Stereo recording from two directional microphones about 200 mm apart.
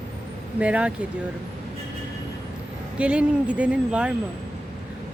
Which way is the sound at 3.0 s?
5° right (ahead or behind).